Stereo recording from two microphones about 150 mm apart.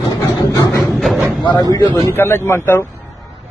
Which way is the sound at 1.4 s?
30° left (ahead or behind).